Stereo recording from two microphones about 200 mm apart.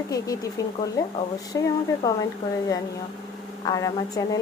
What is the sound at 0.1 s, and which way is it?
Speech, 15° left (ahead or behind).